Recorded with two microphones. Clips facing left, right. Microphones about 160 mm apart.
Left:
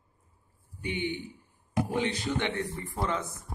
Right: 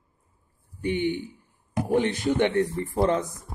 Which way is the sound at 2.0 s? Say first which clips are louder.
Right 10 dB; 50° right (ahead or behind).